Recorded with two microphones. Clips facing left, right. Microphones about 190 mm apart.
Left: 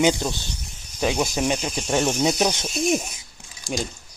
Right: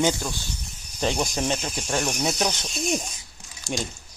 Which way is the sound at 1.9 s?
20° left (ahead or behind).